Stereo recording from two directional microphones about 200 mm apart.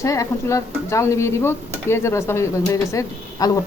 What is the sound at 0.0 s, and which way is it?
A man's voice, 15° left (ahead or behind).